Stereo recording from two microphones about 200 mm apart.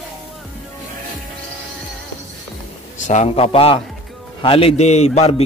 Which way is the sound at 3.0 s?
35° left (ahead or behind).